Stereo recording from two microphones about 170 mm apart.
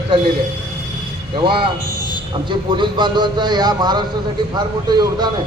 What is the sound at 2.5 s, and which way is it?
A man's voice, 30° right (ahead or behind).